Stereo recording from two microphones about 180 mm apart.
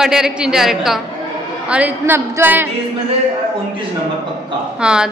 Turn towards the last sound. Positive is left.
turn(degrees=-5)  # may be behind; listen again after turning